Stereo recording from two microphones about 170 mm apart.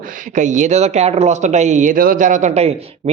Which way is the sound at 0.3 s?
45° right (ahead or behind).